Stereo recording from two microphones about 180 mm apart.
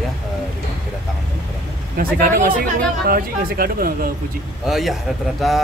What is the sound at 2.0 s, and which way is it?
Speech, 55° right (ahead or behind).